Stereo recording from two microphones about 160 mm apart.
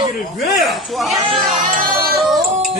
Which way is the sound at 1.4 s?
55° right (ahead or behind).